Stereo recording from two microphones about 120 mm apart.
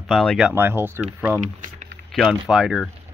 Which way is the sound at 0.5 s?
15° right (ahead or behind).